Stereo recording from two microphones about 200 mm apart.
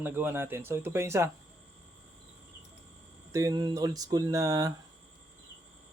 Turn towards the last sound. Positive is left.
turn(degrees=-20)  # may be behind; listen again after turning